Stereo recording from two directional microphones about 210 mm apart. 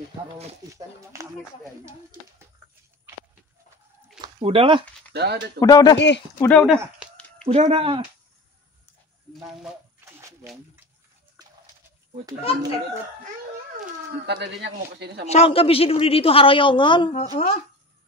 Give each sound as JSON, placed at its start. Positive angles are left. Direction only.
{"t": 1.9, "sound": "speech", "side_deg": -15}
{"t": 4.2, "sound": "speech", "side_deg": -25}
{"t": 5.1, "sound": "speech", "side_deg": -50}
{"t": 5.6, "sound": "speech", "side_deg": 15}
{"t": 5.9, "sound": "speech", "side_deg": 55}
{"t": 6.4, "sound": "speech", "side_deg": 5}
{"t": 7.4, "sound": "speech", "side_deg": -25}
{"t": 14.2, "sound": "a man's voice", "side_deg": -55}
{"t": 15.2, "sound": "a man's voice", "side_deg": 30}
{"t": 17.1, "sound": "speech", "side_deg": 35}